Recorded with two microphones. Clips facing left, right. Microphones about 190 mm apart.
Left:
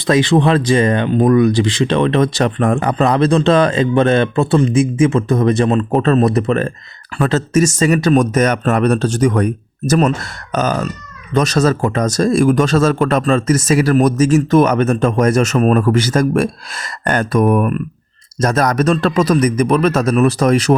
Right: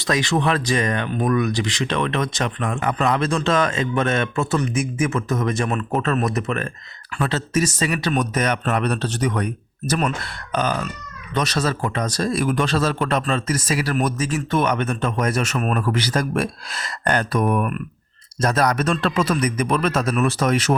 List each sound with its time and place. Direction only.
0.1 s speech: 30° left (ahead or behind); by 2.9 s 50° left (ahead or behind)
3.0 s speech: 35° left (ahead or behind)
7.2 s a man's voice: 45° left (ahead or behind)